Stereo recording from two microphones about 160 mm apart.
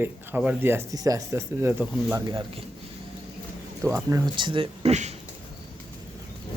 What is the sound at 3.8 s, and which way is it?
Speech, 20° right (ahead or behind).